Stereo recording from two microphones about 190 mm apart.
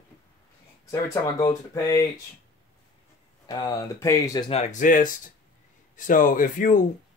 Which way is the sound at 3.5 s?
20° left (ahead or behind).